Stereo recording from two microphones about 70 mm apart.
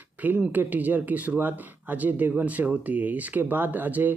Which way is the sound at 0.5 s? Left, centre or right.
Right.